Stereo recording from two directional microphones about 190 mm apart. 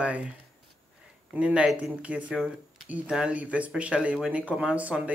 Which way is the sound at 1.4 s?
5° right (ahead or behind).